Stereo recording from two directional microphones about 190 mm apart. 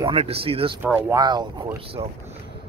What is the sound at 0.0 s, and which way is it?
Speech, 30° right (ahead or behind).